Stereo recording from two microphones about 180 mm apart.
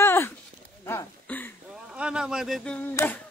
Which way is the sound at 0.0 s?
15° left (ahead or behind).